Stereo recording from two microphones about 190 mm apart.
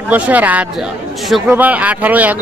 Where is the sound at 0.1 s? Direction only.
10° right (ahead or behind).